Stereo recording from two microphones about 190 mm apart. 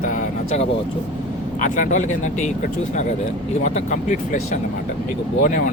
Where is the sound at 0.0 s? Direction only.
40° left (ahead or behind).